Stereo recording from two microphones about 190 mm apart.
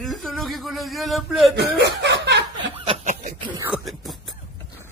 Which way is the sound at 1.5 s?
65° right (ahead or behind).